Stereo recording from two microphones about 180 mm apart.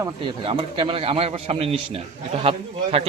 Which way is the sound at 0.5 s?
30° right (ahead or behind).